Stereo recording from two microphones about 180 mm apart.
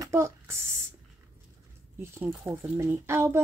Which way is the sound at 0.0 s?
15° right (ahead or behind).